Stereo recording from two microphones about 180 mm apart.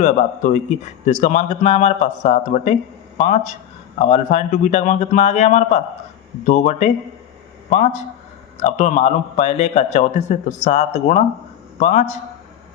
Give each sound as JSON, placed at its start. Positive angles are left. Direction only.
{"t": 0.0, "sound": "a man's voice", "side_deg": 45}